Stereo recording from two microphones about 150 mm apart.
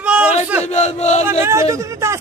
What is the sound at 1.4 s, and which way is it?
Speech, 20° right (ahead or behind).